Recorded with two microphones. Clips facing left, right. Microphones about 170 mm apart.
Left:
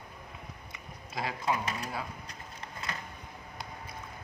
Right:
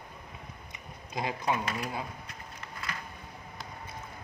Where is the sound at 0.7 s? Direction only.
20° right (ahead or behind).